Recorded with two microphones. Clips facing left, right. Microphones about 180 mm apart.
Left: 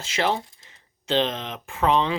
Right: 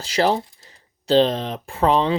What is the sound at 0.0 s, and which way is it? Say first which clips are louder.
Speech: right 5 dB; 35° right (ahead or behind).